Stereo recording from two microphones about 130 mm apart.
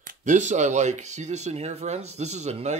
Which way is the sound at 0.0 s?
75° right (ahead or behind).